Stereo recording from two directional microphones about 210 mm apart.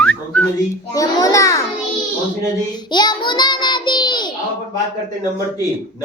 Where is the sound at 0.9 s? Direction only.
15° left (ahead or behind).